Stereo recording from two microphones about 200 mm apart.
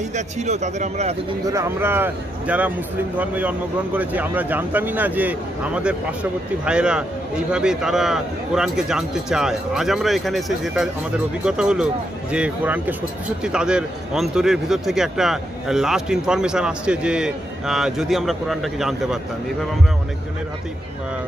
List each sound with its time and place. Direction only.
0.1 s speech: 35° right (ahead or behind)
1.4 s a man's voice: 15° right (ahead or behind)